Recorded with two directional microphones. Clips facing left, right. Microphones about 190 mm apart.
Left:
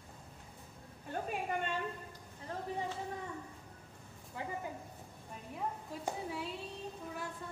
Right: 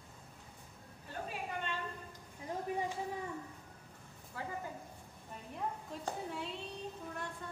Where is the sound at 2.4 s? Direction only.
15° right (ahead or behind).